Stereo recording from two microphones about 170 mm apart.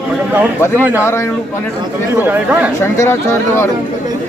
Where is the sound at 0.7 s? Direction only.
10° right (ahead or behind).